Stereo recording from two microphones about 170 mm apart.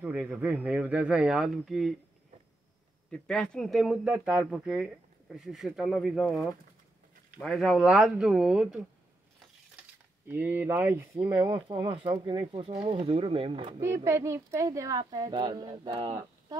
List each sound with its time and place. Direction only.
0.0 s speech: 5° right (ahead or behind)
3.1 s speech: 5° left (ahead or behind)
7.4 s speech: centre (ahead or behind)
10.2 s speech: 10° right (ahead or behind); by 13.7 s 30° right (ahead or behind)
13.7 s speech: 15° right (ahead or behind)